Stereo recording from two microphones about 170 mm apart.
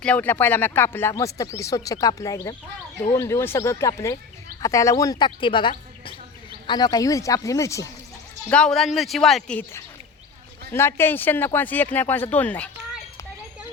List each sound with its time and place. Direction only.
0.0 s speech: 10° left (ahead or behind)
8.4 s speech: 5° left (ahead or behind)